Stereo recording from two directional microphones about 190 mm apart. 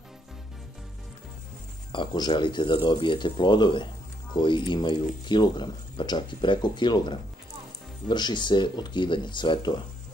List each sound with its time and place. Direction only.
1.9 s speech: 25° left (ahead or behind)